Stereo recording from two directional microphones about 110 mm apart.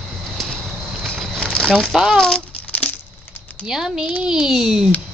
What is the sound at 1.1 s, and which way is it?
Crumpling, 5° left (ahead or behind).